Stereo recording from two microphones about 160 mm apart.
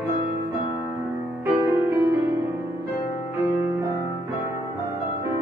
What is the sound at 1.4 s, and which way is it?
Music, 15° right (ahead or behind).